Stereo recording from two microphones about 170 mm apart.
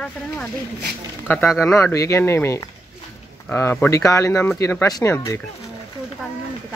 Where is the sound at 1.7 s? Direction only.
15° left (ahead or behind).